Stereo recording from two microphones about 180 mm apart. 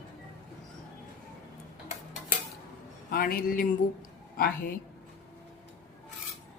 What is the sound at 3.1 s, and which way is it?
Speech, 55° left (ahead or behind).